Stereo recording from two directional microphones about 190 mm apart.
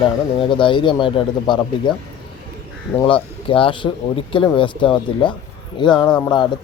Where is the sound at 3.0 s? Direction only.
25° left (ahead or behind).